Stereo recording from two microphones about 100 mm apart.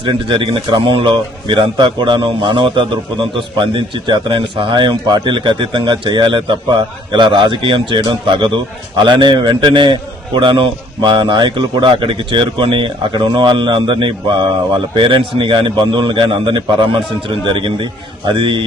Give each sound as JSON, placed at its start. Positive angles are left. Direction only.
{"t": 0.0, "sound": "a man's voice", "side_deg": -55}